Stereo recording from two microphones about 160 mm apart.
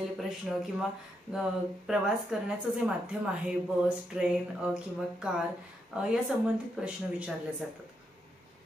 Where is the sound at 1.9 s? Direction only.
5° right (ahead or behind).